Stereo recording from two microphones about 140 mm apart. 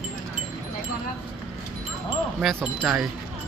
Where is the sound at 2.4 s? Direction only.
Centre (ahead or behind).